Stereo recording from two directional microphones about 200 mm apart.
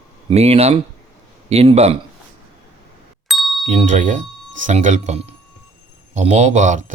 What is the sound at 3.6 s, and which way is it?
Speech, 40° right (ahead or behind).